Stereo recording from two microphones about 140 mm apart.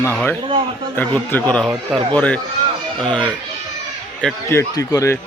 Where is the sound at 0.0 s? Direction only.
15° left (ahead or behind).